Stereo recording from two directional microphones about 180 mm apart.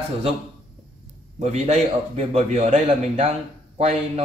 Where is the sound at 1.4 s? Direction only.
35° right (ahead or behind).